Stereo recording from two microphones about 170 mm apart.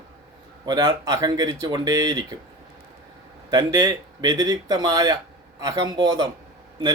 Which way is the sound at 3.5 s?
25° right (ahead or behind).